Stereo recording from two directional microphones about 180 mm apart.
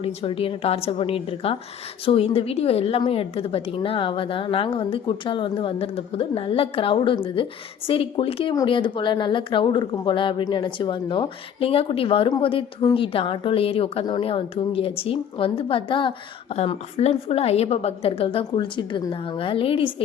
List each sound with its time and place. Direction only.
0.0 s a woman's voice: 30° left (ahead or behind)